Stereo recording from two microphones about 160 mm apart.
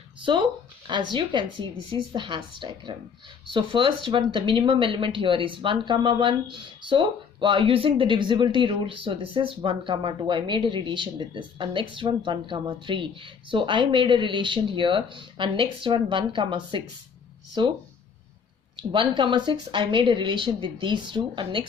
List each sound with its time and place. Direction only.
0.2 s a woman's voice: 30° right (ahead or behind)
18.8 s a woman's voice: 30° right (ahead or behind)